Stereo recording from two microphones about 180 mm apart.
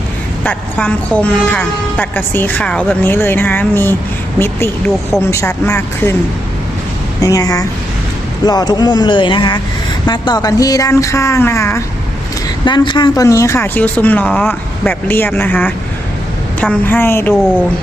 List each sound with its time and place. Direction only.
0.4 s a woman's voice: 10° left (ahead or behind)
7.2 s a woman's voice: 20° left (ahead or behind)
12.6 s a woman's voice: 25° left (ahead or behind)